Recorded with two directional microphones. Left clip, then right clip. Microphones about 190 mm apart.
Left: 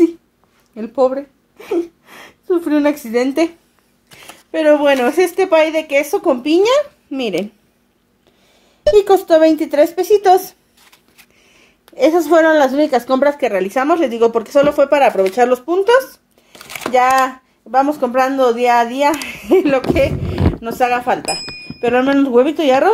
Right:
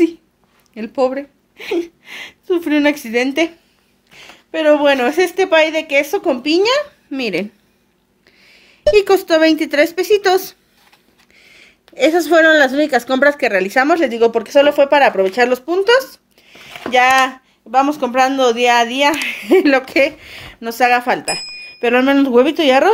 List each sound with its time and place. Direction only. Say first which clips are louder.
0.7 s a woman's voice: left 2 dB; 5° left (ahead or behind)
8.5 s a woman's voice: even; centre (ahead or behind)
11.9 s a woman's voice: left 1 dB; 5° left (ahead or behind)
19.6 s speech: right 1 dB; 10° right (ahead or behind)
21.7 s speech: right 1 dB; 10° right (ahead or behind)